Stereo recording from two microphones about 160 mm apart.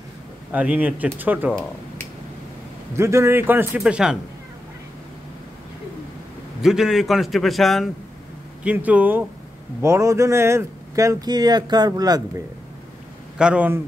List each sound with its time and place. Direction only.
0.5 s a man's voice: 10° right (ahead or behind)
3.0 s a man's voice: 15° right (ahead or behind)
6.6 s a man's voice: centre (ahead or behind); by 12.2 s 25° right (ahead or behind)
13.4 s a man's voice: 10° right (ahead or behind)